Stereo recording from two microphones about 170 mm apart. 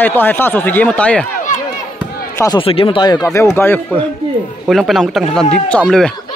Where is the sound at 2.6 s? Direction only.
30° left (ahead or behind); by 4.0 s 15° left (ahead or behind).